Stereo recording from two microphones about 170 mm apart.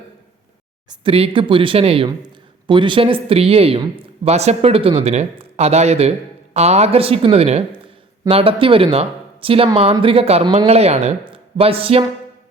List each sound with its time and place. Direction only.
0.9 s speech: 35° right (ahead or behind)